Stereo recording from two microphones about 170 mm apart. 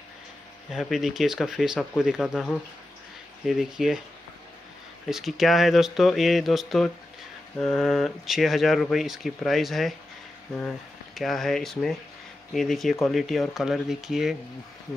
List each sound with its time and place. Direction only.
0.7 s speech: centre (ahead or behind)
5.1 s speech: centre (ahead or behind)
11.1 s speech: centre (ahead or behind)